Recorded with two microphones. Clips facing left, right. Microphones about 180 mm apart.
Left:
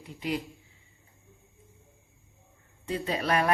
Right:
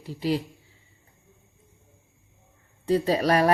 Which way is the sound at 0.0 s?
35° right (ahead or behind).